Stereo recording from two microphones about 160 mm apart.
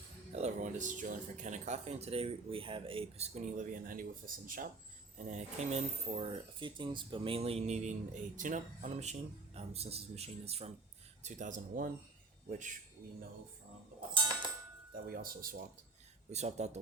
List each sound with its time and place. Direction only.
0.3 s speech: 50° right (ahead or behind)
5.3 s speech: 45° right (ahead or behind)
14.9 s speech: 65° right (ahead or behind)
16.3 s speech: 45° right (ahead or behind)